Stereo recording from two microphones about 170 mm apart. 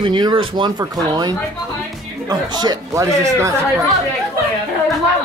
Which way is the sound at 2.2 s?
25° right (ahead or behind).